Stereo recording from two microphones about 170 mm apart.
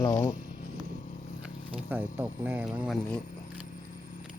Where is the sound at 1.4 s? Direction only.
5° right (ahead or behind).